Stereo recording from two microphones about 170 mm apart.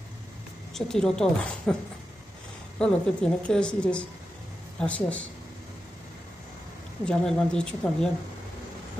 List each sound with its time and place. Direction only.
0.7 s speech: 5° left (ahead or behind)
2.8 s a woman's voice: 5° left (ahead or behind)
7.1 s speech: 5° left (ahead or behind)